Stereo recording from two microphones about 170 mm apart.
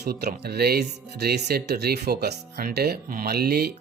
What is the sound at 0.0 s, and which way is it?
Speech, 70° right (ahead or behind).